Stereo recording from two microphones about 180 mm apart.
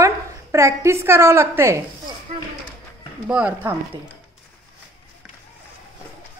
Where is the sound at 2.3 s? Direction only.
35° right (ahead or behind).